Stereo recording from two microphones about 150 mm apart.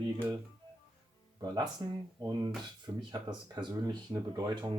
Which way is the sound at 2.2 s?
30° right (ahead or behind).